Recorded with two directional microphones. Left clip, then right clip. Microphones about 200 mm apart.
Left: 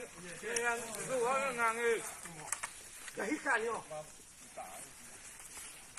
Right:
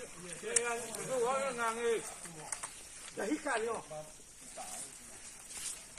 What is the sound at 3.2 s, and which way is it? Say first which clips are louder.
Speech: left 1 dB; 25° right (ahead or behind).